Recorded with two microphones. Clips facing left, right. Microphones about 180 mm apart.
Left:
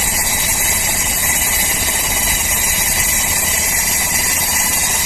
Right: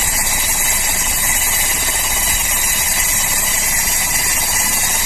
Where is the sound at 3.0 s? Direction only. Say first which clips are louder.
Left 2 dB; 25° left (ahead or behind).